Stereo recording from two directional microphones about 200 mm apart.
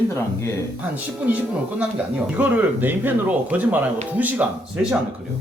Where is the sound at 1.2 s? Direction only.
5° right (ahead or behind).